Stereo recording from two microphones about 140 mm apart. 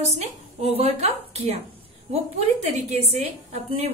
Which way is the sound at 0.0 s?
50° right (ahead or behind).